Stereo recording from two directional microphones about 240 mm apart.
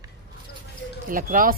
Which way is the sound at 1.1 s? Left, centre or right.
Right.